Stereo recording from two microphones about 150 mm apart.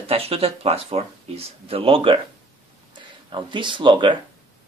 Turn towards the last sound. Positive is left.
turn(degrees=-30)  # may be behind; listen again after turning